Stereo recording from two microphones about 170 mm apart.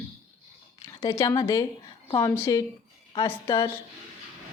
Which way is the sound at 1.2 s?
20° left (ahead or behind).